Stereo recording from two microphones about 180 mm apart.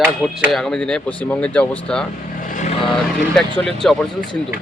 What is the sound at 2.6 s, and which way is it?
Vehicle, 35° left (ahead or behind).